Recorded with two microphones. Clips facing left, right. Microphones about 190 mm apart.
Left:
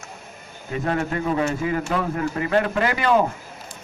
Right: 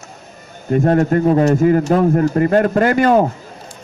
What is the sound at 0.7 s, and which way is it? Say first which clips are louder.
A man's voice: right 10 dB; 45° right (ahead or behind).